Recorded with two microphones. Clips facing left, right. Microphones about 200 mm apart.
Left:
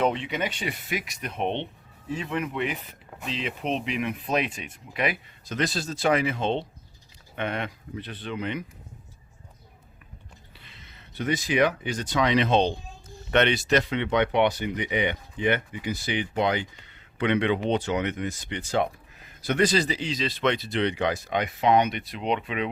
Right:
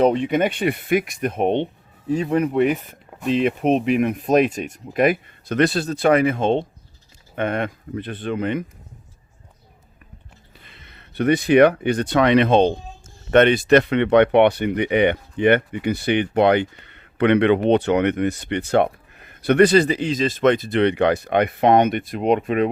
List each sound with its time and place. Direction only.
0.0 s speech: 45° right (ahead or behind)
10.6 s speech: 55° right (ahead or behind)